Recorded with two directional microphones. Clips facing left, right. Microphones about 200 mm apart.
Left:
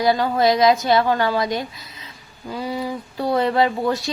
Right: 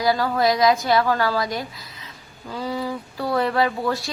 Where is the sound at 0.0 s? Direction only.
25° left (ahead or behind).